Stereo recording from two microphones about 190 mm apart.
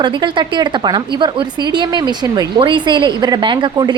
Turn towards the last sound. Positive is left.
turn(degrees=-25)  # may be behind; listen again after turning